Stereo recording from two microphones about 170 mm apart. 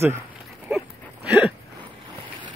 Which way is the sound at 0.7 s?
5° right (ahead or behind).